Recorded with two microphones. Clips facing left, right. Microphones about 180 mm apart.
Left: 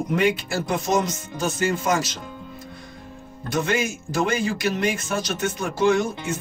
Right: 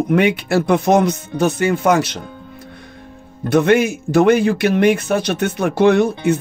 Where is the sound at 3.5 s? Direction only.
60° right (ahead or behind).